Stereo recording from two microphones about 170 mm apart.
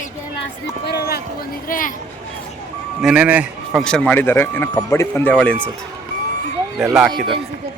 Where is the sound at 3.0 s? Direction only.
5° right (ahead or behind).